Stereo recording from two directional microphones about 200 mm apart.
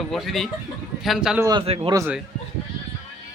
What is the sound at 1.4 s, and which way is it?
Speech, 25° right (ahead or behind).